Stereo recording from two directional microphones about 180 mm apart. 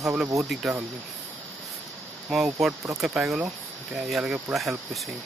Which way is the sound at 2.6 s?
Centre (ahead or behind).